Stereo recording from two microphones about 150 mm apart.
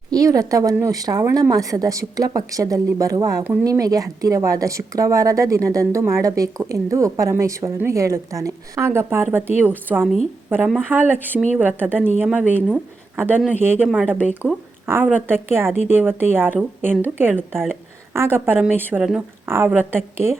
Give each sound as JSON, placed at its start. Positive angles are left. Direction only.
{"t": 0.1, "sound": "speech", "side_deg": -25}
{"t": 3.4, "sound": "speech", "side_deg": -15}
{"t": 3.7, "sound": "a woman's voice", "side_deg": -25}